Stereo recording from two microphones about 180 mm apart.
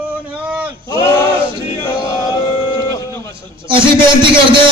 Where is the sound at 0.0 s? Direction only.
10° right (ahead or behind).